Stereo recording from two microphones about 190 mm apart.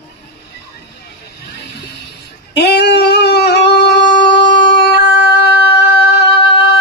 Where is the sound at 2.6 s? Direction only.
60° left (ahead or behind).